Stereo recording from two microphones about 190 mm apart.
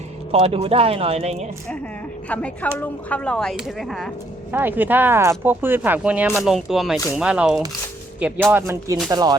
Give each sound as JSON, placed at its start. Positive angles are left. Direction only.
{"t": 0.3, "sound": "speech", "side_deg": -30}
{"t": 2.3, "sound": "a woman's voice", "side_deg": 5}
{"t": 4.5, "sound": "a woman's voice", "side_deg": -10}
{"t": 8.5, "sound": "speech", "side_deg": -15}